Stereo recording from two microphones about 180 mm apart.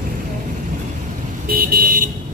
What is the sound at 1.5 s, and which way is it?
Vehicle, 55° right (ahead or behind).